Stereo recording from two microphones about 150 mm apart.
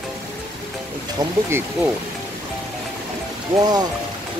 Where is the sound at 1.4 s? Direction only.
15° right (ahead or behind).